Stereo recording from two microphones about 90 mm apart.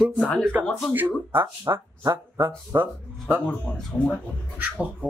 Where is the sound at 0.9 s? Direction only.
20° right (ahead or behind).